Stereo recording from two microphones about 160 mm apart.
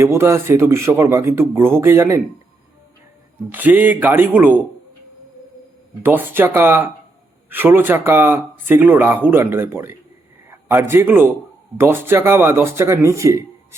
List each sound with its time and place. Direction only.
0.0 s speech: 15° right (ahead or behind)
3.3 s speech: 10° right (ahead or behind)
6.0 s a man's voice: 10° right (ahead or behind)